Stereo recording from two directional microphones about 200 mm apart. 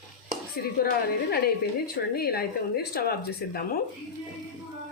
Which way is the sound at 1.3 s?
50° left (ahead or behind).